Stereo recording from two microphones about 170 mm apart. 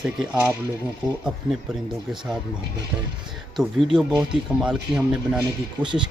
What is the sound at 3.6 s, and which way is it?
Speech, 5° right (ahead or behind).